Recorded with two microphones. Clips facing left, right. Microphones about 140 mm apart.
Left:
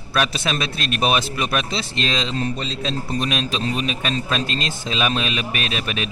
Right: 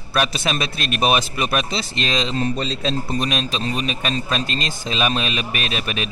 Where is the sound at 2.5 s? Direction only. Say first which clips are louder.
Right 3 dB; 40° right (ahead or behind).